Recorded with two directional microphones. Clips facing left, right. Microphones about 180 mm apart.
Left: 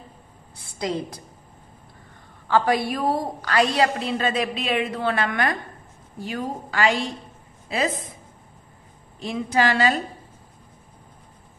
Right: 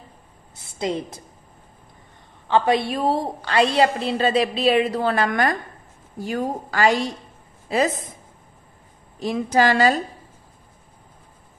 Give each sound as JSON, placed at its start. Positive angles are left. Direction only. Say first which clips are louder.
{"t": 0.7, "sound": "a woman's voice", "louder": "right 2 dB", "side_deg": -25}
{"t": 2.4, "sound": "a woman's voice", "louder": "right 2 dB", "side_deg": -20}
{"t": 9.2, "sound": "a woman's voice", "louder": "right 3 dB", "side_deg": -40}